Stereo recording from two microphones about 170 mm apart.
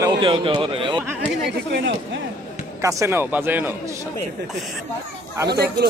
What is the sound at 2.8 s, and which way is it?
A man's voice, 20° right (ahead or behind).